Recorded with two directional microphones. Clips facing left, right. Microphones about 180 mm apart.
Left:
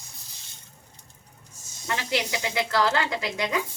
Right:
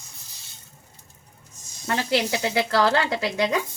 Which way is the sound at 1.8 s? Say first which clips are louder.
Right 5 dB; 40° right (ahead or behind).